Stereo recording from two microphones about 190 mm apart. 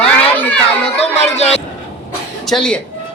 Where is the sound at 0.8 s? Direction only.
35° left (ahead or behind).